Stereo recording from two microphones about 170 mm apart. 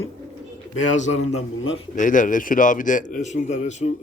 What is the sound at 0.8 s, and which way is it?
A man's voice, 45° left (ahead or behind).